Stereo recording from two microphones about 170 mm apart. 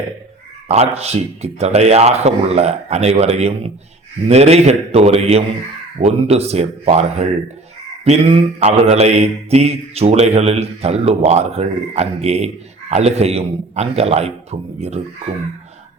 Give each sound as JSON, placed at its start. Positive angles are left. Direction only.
{"t": 0.7, "sound": "mantra", "side_deg": -40}